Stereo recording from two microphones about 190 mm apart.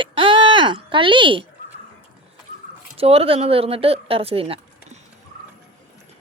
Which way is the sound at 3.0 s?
30° right (ahead or behind).